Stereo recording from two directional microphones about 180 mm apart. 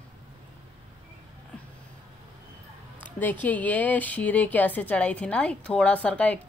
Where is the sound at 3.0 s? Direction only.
10° left (ahead or behind).